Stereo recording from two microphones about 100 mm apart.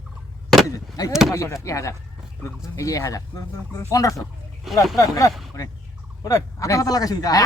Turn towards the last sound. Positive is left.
turn(degrees=40)  # may be behind; listen again after turning